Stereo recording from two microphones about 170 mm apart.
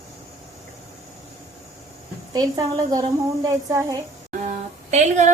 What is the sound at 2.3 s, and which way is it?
A woman's voice, 20° right (ahead or behind).